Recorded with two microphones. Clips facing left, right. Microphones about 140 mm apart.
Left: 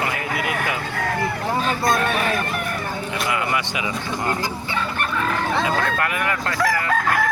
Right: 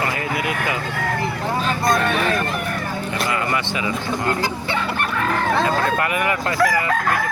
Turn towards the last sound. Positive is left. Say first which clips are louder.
# right 3 dB
turn(degrees=-5)  # may be behind; listen again after turning